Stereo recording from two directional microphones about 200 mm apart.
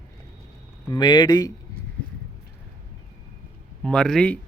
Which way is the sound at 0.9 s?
20° left (ahead or behind).